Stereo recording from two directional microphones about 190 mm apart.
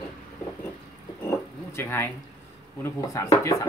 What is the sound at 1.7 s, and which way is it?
Speech, 15° left (ahead or behind).